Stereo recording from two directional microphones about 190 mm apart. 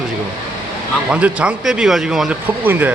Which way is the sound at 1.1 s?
5° right (ahead or behind).